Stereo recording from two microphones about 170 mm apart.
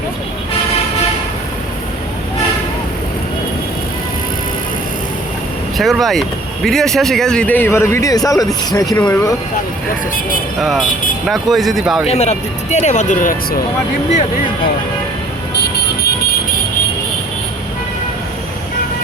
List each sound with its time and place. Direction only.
5.7 s speech: centre (ahead or behind); by 9.0 s 20° left (ahead or behind)
9.0 s speech: 10° left (ahead or behind)
10.6 s speech: centre (ahead or behind)
12.0 s speech: 40° left (ahead or behind)